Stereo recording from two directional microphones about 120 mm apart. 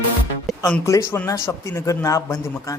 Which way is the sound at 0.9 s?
25° left (ahead or behind).